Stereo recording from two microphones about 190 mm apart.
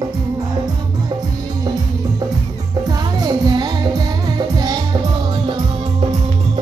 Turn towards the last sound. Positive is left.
turn(degrees=-20)  # may be behind; listen again after turning